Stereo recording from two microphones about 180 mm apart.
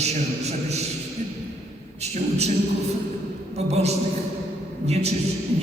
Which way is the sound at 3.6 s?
35° right (ahead or behind).